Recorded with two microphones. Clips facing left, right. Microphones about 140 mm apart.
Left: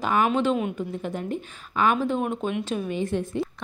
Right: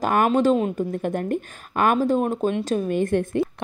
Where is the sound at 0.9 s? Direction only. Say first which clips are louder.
Right 5 dB; 55° right (ahead or behind).